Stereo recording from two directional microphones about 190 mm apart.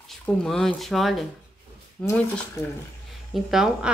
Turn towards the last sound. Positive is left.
turn(degrees=0)  # may be behind; listen again after turning